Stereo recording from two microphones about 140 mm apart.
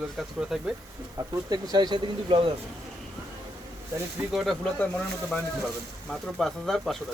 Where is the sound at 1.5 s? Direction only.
30° right (ahead or behind).